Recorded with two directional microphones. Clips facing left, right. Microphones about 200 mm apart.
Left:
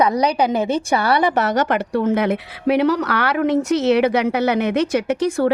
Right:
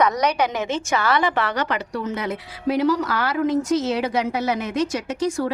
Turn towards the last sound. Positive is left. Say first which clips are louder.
# left 5 dB
turn(degrees=60)  # may be behind; listen again after turning